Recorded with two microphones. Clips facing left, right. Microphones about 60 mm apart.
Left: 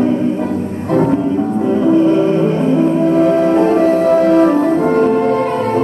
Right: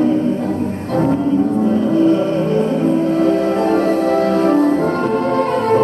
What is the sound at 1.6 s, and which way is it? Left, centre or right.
Music, left.